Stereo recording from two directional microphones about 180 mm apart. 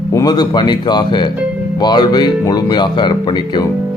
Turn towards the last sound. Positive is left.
turn(degrees=25)  # may be behind; listen again after turning